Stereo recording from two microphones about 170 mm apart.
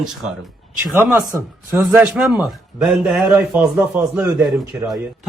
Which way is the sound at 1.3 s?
15° right (ahead or behind).